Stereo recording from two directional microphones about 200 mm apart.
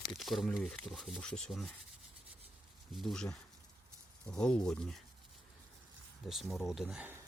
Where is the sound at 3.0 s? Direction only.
Centre (ahead or behind).